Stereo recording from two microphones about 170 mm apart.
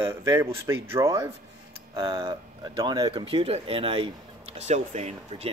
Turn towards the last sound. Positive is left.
turn(degrees=-40)  # may be behind; listen again after turning